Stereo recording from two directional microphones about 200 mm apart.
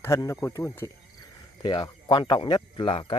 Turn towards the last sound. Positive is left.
turn(degrees=25)  # may be behind; listen again after turning